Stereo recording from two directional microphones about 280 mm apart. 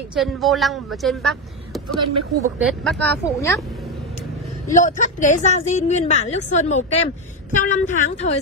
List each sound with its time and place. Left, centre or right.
0.1 s speech: centre
4.7 s a woman's voice: left